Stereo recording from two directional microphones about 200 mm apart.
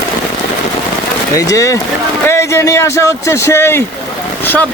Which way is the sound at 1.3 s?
15° left (ahead or behind).